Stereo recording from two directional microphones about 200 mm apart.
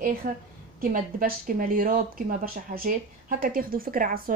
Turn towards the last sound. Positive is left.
turn(degrees=-45)  # may be behind; listen again after turning